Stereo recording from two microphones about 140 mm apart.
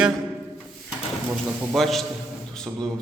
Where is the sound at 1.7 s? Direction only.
Centre (ahead or behind).